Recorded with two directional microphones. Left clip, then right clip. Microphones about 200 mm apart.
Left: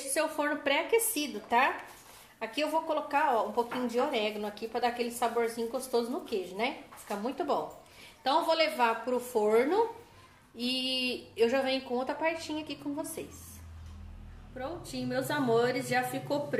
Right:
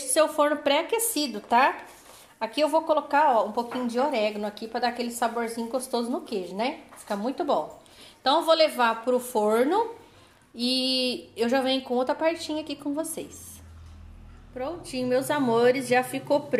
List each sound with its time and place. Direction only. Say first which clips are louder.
0.1 s a woman's voice: right 9 dB; 40° right (ahead or behind)
14.5 s a woman's voice: right 6 dB; 35° right (ahead or behind)